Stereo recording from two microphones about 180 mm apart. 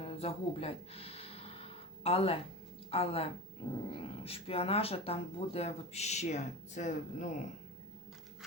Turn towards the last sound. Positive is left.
turn(degrees=40)  # may be behind; listen again after turning